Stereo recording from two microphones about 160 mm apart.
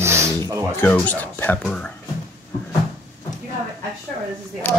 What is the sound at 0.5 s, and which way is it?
Music, 20° right (ahead or behind).